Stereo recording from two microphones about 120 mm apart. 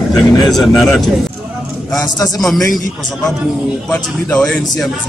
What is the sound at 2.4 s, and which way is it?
Speech, centre (ahead or behind).